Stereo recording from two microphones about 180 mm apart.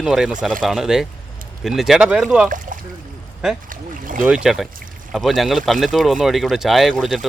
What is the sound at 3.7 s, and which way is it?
Speech, 50° right (ahead or behind).